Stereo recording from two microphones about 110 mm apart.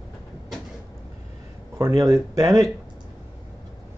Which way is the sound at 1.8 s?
25° right (ahead or behind).